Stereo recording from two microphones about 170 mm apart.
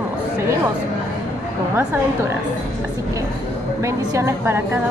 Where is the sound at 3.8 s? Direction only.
20° right (ahead or behind).